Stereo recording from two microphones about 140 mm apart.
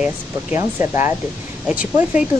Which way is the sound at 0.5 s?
20° right (ahead or behind).